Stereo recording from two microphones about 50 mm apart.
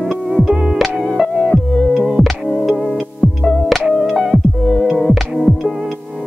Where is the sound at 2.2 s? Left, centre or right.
Left.